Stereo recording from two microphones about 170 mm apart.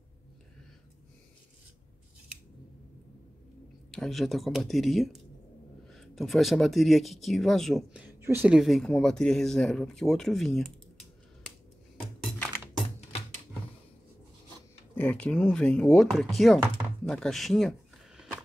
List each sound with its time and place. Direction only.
3.9 s speech: centre (ahead or behind)
12.2 s music: 5° left (ahead or behind)
15.0 s speech: 5° left (ahead or behind)
17.0 s a sound: 5° left (ahead or behind)